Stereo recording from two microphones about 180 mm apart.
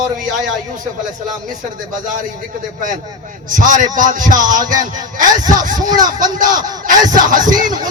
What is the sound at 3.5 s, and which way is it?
A man's voice, 45° right (ahead or behind).